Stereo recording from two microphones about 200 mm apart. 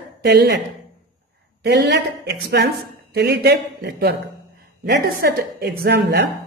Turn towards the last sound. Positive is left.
turn(degrees=-55)  # may be behind; listen again after turning